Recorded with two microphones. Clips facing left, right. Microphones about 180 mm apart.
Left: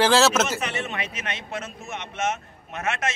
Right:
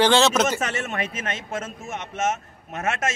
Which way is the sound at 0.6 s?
45° right (ahead or behind).